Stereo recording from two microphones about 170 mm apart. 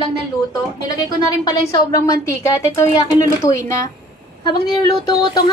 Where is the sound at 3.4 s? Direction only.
20° left (ahead or behind).